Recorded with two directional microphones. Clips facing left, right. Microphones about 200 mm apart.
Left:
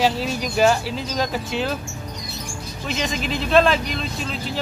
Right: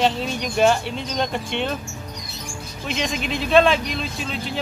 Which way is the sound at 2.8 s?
Centre (ahead or behind).